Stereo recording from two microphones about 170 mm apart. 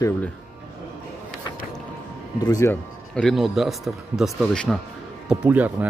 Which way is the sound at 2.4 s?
20° left (ahead or behind).